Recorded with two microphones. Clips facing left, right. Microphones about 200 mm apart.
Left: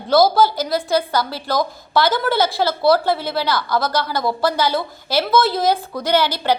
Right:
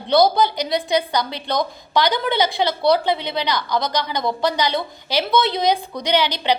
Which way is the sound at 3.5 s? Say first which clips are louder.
Left 2 dB; 15° right (ahead or behind).